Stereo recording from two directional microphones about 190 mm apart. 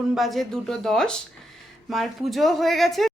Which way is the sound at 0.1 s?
Centre (ahead or behind).